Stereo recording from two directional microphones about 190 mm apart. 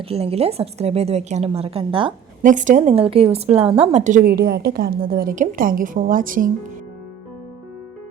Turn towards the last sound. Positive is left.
turn(degrees=-45)  # may be behind; listen again after turning